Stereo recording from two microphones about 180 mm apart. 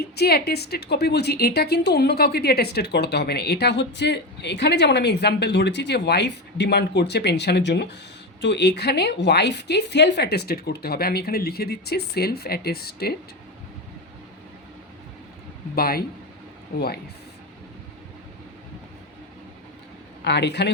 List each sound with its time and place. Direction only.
0.2 s a woman's voice: 60° left (ahead or behind)
15.7 s a woman's voice: 55° left (ahead or behind)
20.2 s a woman's voice: 70° left (ahead or behind)